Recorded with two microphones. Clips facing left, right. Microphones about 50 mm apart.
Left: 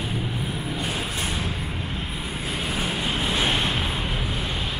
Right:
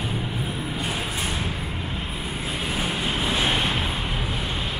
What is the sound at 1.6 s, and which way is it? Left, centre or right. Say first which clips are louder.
Vehicle: even; centre.